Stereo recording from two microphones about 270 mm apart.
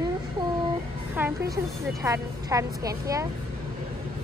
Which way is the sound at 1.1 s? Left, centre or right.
Centre.